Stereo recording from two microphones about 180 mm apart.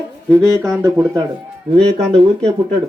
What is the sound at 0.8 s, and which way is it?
Speech, 15° right (ahead or behind).